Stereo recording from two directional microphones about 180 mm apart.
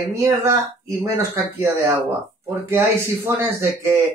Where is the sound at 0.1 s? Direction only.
15° right (ahead or behind).